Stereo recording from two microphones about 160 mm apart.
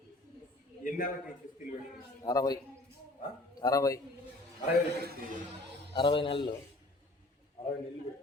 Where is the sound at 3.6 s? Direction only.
20° left (ahead or behind).